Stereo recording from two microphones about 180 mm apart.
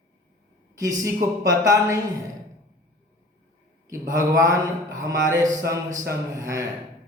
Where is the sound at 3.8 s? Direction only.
15° right (ahead or behind).